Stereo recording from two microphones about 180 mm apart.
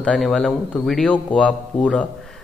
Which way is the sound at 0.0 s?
5° left (ahead or behind).